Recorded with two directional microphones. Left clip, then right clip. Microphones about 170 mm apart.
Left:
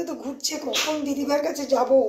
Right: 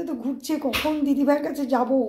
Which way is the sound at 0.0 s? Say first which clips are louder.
Even; centre (ahead or behind).